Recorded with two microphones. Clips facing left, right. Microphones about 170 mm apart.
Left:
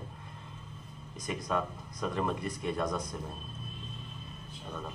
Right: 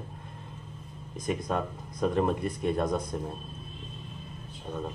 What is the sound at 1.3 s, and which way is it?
Speech, 50° right (ahead or behind).